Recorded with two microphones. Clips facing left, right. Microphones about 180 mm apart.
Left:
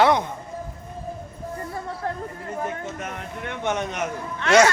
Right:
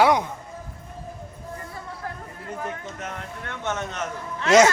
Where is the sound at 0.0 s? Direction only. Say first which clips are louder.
Even; 10° right (ahead or behind).